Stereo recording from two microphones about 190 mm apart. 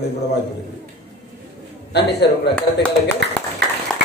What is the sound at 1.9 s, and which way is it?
Speech, 60° left (ahead or behind).